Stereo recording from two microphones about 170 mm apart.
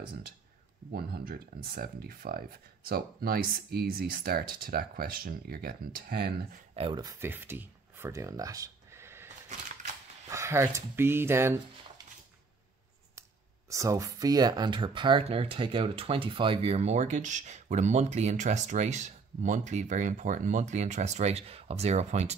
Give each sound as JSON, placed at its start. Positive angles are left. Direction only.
{"t": 0.9, "sound": "speech", "side_deg": -65}
{"t": 6.7, "sound": "speech", "side_deg": -30}
{"t": 13.7, "sound": "speech", "side_deg": -20}